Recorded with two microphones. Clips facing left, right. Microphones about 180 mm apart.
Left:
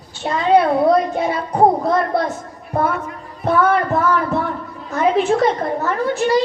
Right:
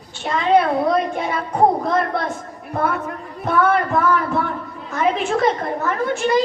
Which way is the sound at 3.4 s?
35° left (ahead or behind).